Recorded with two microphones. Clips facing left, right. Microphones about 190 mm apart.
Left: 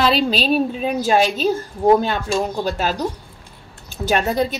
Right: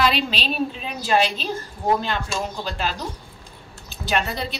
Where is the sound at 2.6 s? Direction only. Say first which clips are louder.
Left 6 dB; 45° left (ahead or behind).